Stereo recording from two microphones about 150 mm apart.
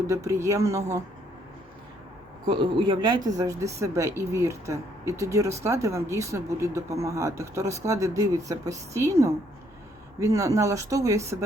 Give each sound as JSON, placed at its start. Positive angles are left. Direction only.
{"t": 0.1, "sound": "speech", "side_deg": -20}
{"t": 2.5, "sound": "speech", "side_deg": -35}